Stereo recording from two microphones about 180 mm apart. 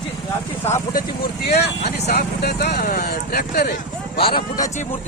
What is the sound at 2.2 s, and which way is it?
Speech, 60° left (ahead or behind).